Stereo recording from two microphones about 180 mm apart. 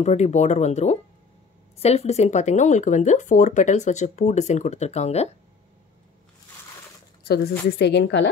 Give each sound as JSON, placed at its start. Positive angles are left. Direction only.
{"t": 0.0, "sound": "speech", "side_deg": 40}
{"t": 7.8, "sound": "a woman's voice", "side_deg": 75}